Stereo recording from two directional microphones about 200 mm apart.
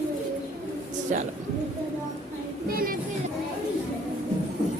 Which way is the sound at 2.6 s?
45° right (ahead or behind).